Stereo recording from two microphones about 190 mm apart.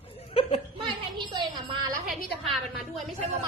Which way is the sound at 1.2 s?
25° right (ahead or behind).